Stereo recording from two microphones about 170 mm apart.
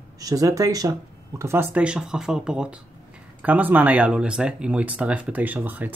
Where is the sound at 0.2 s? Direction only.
20° right (ahead or behind).